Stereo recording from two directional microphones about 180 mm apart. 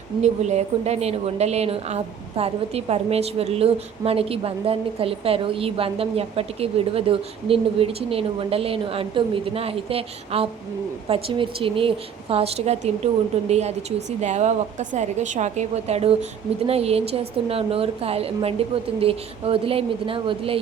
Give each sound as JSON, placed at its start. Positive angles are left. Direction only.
{"t": 0.2, "sound": "a woman's voice", "side_deg": -40}